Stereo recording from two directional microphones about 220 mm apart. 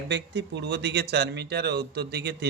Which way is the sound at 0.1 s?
50° right (ahead or behind).